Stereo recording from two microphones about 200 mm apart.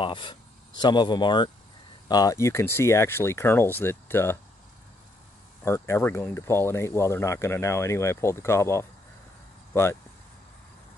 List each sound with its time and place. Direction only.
0.0 s speech: 25° left (ahead or behind)
5.6 s speech: 10° left (ahead or behind)